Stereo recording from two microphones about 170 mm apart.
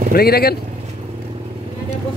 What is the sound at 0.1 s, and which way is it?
Speech, 65° left (ahead or behind).